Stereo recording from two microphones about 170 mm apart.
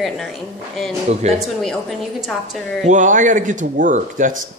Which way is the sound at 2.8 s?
45° right (ahead or behind).